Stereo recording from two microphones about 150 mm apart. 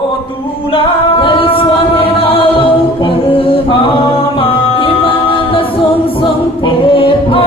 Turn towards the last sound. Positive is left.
turn(degrees=35)  # may be behind; listen again after turning